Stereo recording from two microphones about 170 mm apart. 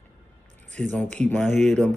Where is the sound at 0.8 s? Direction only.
5° left (ahead or behind).